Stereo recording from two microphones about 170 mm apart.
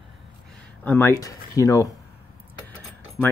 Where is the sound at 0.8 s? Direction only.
15° left (ahead or behind).